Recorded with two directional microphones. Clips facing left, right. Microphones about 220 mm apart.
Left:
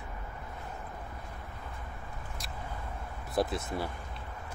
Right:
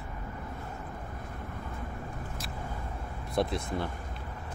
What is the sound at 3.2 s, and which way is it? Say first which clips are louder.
Speech: right 1 dB; 5° left (ahead or behind).